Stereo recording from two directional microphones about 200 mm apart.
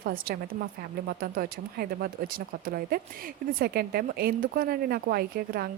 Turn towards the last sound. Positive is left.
turn(degrees=-50)  # may be behind; listen again after turning